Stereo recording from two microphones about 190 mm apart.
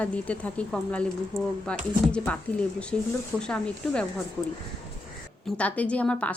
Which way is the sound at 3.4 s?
5° left (ahead or behind).